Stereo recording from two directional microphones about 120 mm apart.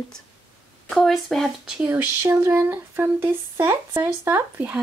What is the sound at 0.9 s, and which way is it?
Speech, centre (ahead or behind).